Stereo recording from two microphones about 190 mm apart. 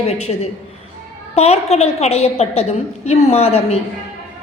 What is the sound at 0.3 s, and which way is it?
A man's voice, 25° left (ahead or behind).